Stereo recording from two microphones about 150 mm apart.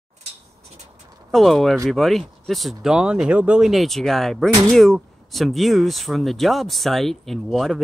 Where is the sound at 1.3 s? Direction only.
Centre (ahead or behind).